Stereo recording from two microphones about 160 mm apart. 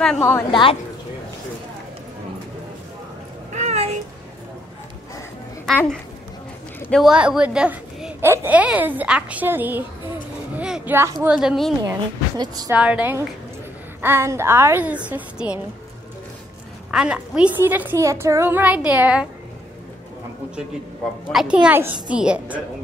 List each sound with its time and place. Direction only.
0.0 s a woman's voice: 10° left (ahead or behind)
0.5 s a woman's voice: 30° left (ahead or behind)
3.5 s a sound: 45° right (ahead or behind)
7.0 s a child's voice: 5° right (ahead or behind)
10.5 s a sound: 10° right (ahead or behind)
11.2 s a woman's voice: 5° right (ahead or behind)
11.8 s speech: 20° right (ahead or behind)
12.7 s a child's voice: 10° right (ahead or behind)
16.9 s a child's voice: 5° right (ahead or behind)
21.3 s a child's voice: 5° right (ahead or behind)